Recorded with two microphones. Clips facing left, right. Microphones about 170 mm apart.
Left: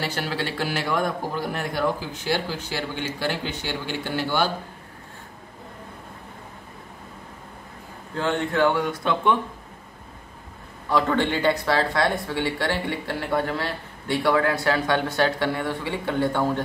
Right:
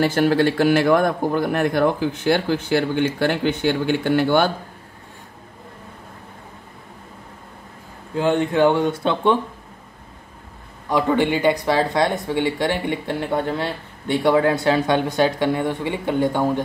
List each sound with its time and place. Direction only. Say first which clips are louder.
0.0 s a man's voice: right 11 dB; 50° right (ahead or behind)
8.2 s speech: right 5 dB; 15° right (ahead or behind)
10.9 s speech: right 3 dB; 15° right (ahead or behind)